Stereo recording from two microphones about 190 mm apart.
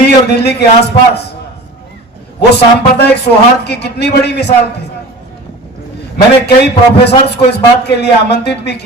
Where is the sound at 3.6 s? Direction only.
60° left (ahead or behind).